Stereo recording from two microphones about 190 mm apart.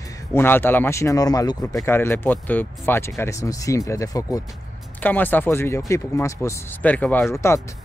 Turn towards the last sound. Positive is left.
turn(degrees=15)  # may be behind; listen again after turning